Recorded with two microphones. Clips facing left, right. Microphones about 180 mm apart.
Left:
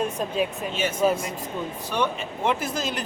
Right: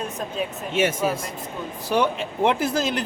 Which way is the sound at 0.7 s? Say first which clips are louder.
Right 5 dB; 90° right.